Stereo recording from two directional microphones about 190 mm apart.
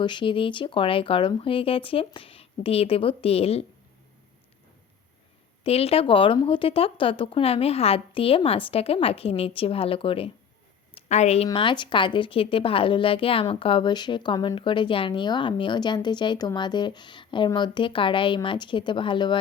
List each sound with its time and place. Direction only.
0.0 s speech: 25° left (ahead or behind)
5.6 s a woman's voice: 30° left (ahead or behind)
11.4 s speech: 25° left (ahead or behind)